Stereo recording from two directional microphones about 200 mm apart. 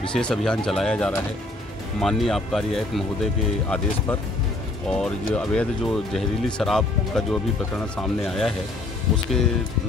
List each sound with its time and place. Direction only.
0.0 s speech: 5° left (ahead or behind)